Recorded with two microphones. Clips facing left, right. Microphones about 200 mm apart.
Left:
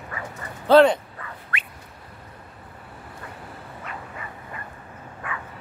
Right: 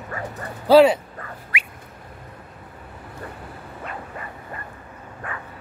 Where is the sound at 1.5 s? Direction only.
10° right (ahead or behind).